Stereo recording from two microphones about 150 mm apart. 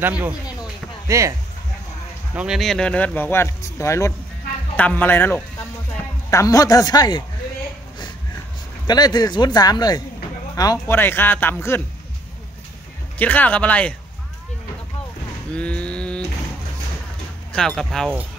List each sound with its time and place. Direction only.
0.0 s speech: 10° right (ahead or behind)
2.3 s speech: 5° right (ahead or behind); by 7.2 s 25° left (ahead or behind)
8.8 s speech: 25° left (ahead or behind)
13.2 s speech: 10° left (ahead or behind)
15.5 s a sound: 10° left (ahead or behind)
17.5 s speech: 5° left (ahead or behind)